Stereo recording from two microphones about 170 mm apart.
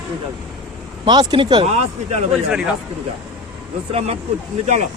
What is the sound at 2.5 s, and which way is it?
Speech, 5° right (ahead or behind).